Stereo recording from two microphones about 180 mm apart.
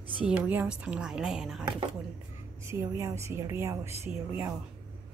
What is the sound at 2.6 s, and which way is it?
A woman's voice, 15° right (ahead or behind).